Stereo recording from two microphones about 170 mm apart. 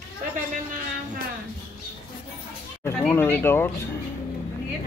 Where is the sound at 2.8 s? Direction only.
15° left (ahead or behind).